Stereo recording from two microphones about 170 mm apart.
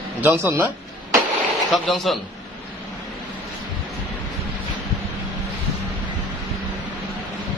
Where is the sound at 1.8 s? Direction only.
Centre (ahead or behind).